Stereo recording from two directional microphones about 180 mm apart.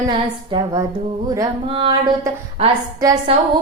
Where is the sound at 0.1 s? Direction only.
20° right (ahead or behind).